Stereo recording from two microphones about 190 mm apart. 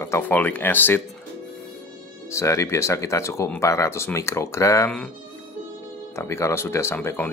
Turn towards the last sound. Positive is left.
turn(degrees=10)  # may be behind; listen again after turning